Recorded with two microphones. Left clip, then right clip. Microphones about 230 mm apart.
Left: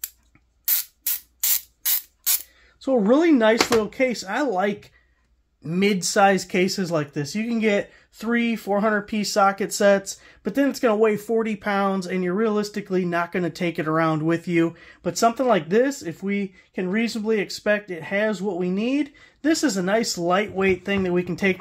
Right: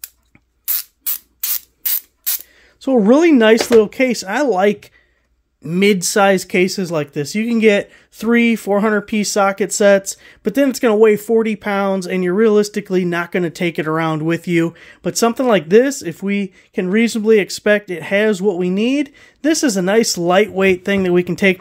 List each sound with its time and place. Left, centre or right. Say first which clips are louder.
1.4 s spray: left 1 dB; centre
2.8 s speech: right 7 dB; right